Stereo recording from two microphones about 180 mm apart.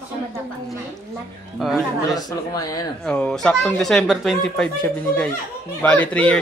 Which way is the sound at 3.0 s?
5° left (ahead or behind).